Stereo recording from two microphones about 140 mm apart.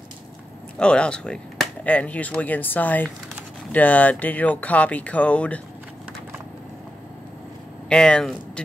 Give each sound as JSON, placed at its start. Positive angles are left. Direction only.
{"t": 0.7, "sound": "speech", "side_deg": 5}
{"t": 7.9, "sound": "speech", "side_deg": 5}